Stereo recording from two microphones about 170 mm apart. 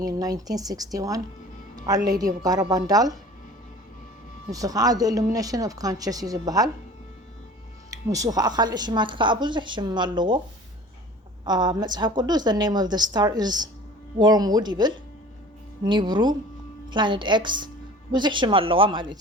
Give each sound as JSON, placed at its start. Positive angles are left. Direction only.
{"t": 0.0, "sound": "a woman's voice", "side_deg": -20}
{"t": 4.5, "sound": "a woman's voice", "side_deg": -20}
{"t": 7.9, "sound": "a woman's voice", "side_deg": -20}
{"t": 11.4, "sound": "a woman's voice", "side_deg": -25}